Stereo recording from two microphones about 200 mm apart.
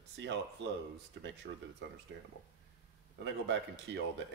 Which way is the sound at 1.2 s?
65° right (ahead or behind).